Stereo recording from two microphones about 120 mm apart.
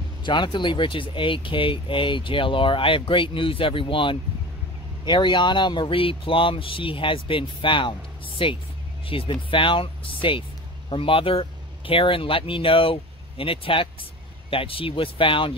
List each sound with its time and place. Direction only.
0.2 s speech: 40° left (ahead or behind)